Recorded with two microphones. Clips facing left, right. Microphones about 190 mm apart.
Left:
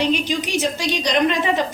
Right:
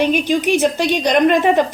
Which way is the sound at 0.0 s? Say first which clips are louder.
Right 5 dB; 55° right (ahead or behind).